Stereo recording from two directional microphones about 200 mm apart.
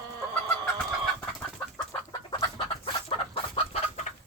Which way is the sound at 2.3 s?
25° left (ahead or behind).